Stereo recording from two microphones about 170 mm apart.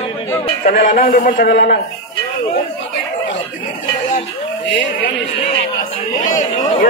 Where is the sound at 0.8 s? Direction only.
55° left (ahead or behind).